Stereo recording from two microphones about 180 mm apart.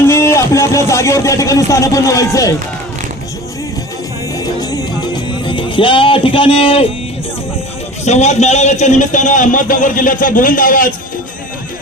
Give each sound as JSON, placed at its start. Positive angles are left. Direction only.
{"t": 0.1, "sound": "speech", "side_deg": 15}
{"t": 4.6, "sound": "music", "side_deg": 20}
{"t": 8.0, "sound": "a man's voice", "side_deg": 40}